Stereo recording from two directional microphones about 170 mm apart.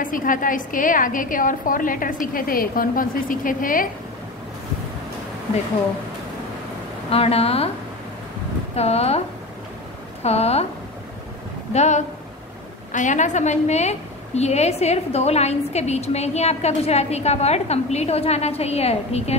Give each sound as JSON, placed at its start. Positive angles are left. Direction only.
{"t": 0.0, "sound": "a woman's voice", "side_deg": 55}
{"t": 7.1, "sound": "a woman's voice", "side_deg": 35}
{"t": 8.7, "sound": "a woman's voice", "side_deg": 35}
{"t": 10.2, "sound": "a woman's voice", "side_deg": 35}
{"t": 11.7, "sound": "a woman's voice", "side_deg": 40}